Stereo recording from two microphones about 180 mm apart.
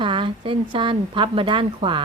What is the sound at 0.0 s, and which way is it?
A woman's voice, 30° right (ahead or behind).